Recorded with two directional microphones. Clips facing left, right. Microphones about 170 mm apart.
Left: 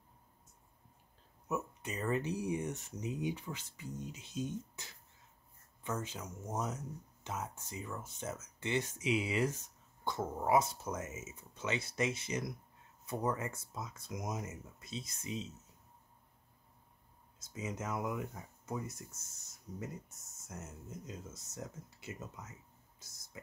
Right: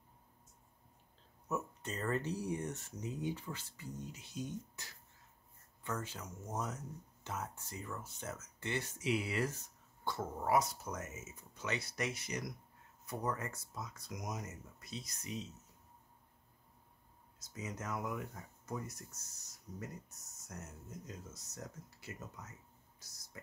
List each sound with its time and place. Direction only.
1.5 s speech: 15° left (ahead or behind)
17.5 s speech: 25° left (ahead or behind)